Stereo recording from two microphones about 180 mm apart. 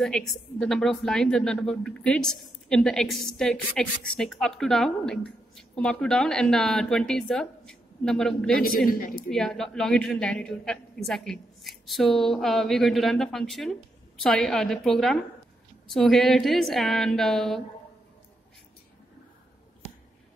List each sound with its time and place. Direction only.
0.0 s a woman's voice: centre (ahead or behind)
8.6 s a woman's voice: 50° left (ahead or behind)
9.3 s a woman's voice: 5° left (ahead or behind)